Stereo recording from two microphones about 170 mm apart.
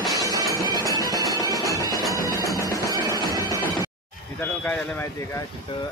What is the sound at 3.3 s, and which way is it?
Music, 20° right (ahead or behind).